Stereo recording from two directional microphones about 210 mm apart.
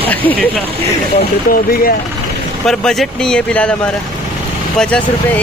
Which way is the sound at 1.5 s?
45° left (ahead or behind).